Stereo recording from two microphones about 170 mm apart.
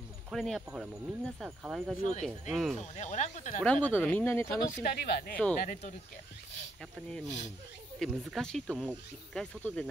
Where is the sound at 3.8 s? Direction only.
10° left (ahead or behind).